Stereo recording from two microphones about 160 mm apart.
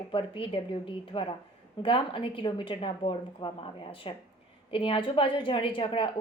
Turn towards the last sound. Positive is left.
turn(degrees=30)  # may be behind; listen again after turning